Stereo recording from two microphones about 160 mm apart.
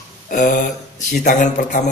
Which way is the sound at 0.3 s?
50° left (ahead or behind).